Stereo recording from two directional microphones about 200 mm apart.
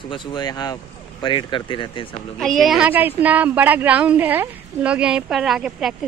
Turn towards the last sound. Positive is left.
turn(degrees=0)  # may be behind; listen again after turning